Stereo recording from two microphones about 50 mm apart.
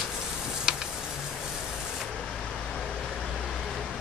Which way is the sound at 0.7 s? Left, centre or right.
Centre.